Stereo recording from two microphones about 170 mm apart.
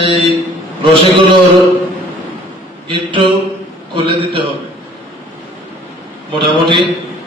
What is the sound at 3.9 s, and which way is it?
Speech, 30° right (ahead or behind).